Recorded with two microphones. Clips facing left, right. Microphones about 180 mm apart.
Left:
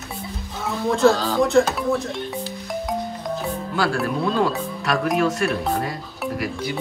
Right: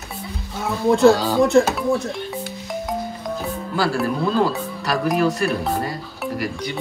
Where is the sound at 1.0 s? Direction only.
10° right (ahead or behind).